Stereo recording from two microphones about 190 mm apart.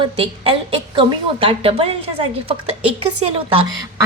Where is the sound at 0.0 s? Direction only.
25° right (ahead or behind).